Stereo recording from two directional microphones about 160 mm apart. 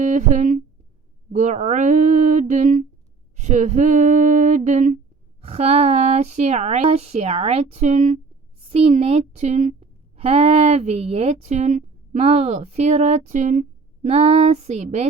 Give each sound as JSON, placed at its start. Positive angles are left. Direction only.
{"t": 0.0, "sound": "speech", "side_deg": -50}
{"t": 5.4, "sound": "speech", "side_deg": -40}